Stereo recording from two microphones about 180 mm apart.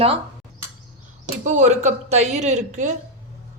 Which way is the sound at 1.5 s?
40° right (ahead or behind).